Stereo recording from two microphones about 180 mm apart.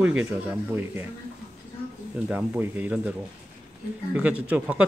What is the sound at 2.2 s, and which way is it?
Speech, 5° right (ahead or behind).